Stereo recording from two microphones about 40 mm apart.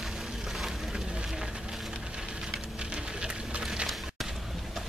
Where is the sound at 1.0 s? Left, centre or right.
Centre.